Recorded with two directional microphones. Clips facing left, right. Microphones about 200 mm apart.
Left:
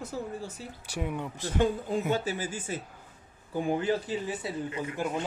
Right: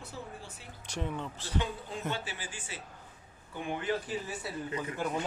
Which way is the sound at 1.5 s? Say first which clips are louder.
Left 9 dB; 45° left (ahead or behind).